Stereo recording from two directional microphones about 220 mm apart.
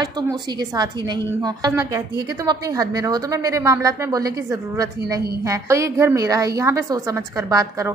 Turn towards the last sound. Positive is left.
turn(degrees=-15)  # may be behind; listen again after turning